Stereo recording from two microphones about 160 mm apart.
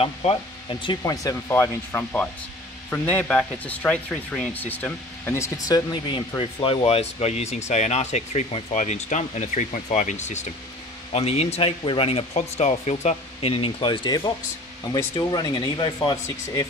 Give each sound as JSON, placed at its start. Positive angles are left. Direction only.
{"t": 0.0, "sound": "speech", "side_deg": 40}
{"t": 1.0, "sound": "speech", "side_deg": 20}
{"t": 12.4, "sound": "speech", "side_deg": 45}